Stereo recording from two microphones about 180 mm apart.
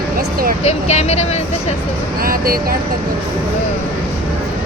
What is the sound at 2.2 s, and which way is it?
Speech, 55° right (ahead or behind).